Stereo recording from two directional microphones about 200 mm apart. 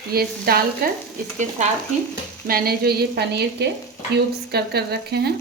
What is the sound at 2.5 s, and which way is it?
A woman's voice, 50° right (ahead or behind).